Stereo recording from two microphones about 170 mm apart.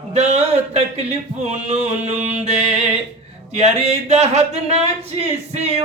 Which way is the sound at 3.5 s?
40° right (ahead or behind).